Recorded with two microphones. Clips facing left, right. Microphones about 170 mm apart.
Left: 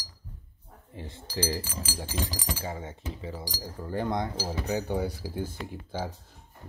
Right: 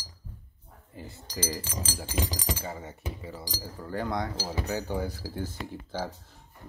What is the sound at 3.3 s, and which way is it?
Cutlery, 15° left (ahead or behind).